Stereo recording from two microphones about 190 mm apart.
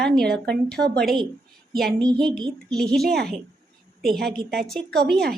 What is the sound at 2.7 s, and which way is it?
A woman's voice, 5° left (ahead or behind).